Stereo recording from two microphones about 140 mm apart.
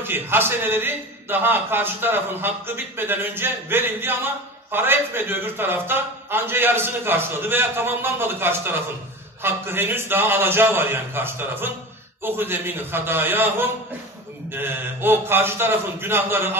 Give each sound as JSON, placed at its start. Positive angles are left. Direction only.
{"t": 0.0, "sound": "a man's voice", "side_deg": -15}